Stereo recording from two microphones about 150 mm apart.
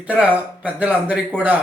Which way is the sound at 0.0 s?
10° right (ahead or behind).